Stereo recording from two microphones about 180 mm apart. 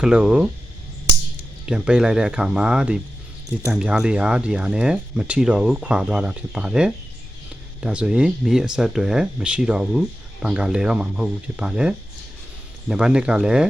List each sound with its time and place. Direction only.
0.0 s speech: 5° right (ahead or behind)
1.6 s speech: 5° right (ahead or behind)